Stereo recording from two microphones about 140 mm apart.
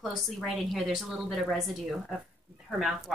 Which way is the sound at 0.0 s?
Centre (ahead or behind).